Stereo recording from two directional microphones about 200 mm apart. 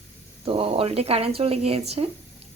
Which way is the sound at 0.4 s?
30° right (ahead or behind).